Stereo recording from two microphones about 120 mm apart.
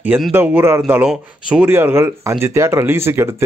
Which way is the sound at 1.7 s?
20° right (ahead or behind).